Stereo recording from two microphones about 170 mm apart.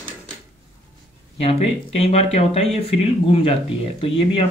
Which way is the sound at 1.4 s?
35° left (ahead or behind).